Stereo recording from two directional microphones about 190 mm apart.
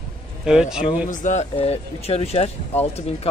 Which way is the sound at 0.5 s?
5° right (ahead or behind).